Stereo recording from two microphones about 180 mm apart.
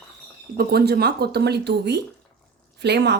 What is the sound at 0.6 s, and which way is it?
Speech, 60° right (ahead or behind).